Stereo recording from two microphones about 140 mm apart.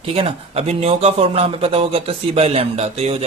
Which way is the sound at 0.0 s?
45° right (ahead or behind).